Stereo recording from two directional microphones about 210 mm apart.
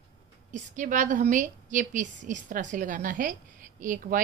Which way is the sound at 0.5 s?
35° right (ahead or behind).